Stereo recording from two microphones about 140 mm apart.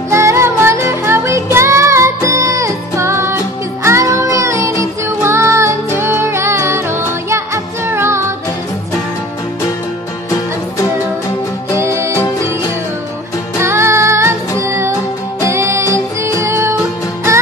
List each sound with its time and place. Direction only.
0.1 s music: 20° right (ahead or behind)
11.7 s music: 20° right (ahead or behind)
13.6 s music: 20° right (ahead or behind)